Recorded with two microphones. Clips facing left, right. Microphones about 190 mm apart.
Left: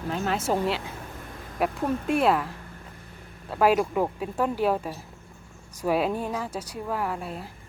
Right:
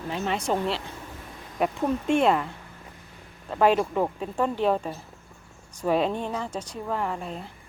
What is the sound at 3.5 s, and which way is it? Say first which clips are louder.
Speech: even; 5° left (ahead or behind).